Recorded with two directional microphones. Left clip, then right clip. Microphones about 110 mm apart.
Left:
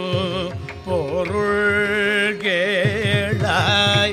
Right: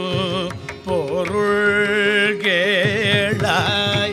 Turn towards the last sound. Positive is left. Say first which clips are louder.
# left 2 dB
turn(degrees=5)  # may be behind; listen again after turning